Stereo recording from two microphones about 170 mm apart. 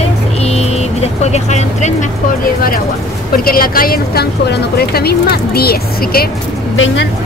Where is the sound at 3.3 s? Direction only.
60° left (ahead or behind).